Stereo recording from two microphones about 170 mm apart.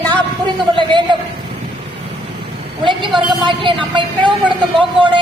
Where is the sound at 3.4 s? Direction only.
30° right (ahead or behind).